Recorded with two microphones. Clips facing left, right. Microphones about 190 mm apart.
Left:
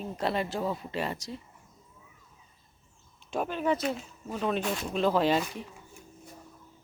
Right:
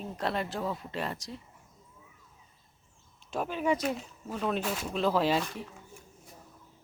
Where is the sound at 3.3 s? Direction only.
5° right (ahead or behind).